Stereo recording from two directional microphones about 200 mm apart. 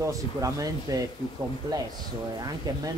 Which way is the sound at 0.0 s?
15° right (ahead or behind).